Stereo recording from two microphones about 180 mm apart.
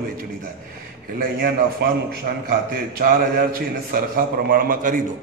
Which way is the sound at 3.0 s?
55° right (ahead or behind).